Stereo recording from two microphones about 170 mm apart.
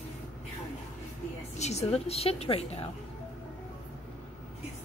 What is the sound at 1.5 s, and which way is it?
Speech, 40° left (ahead or behind).